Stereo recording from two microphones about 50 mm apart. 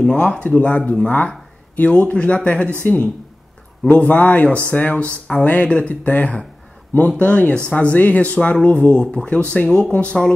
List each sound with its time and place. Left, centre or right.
0.0 s speech: left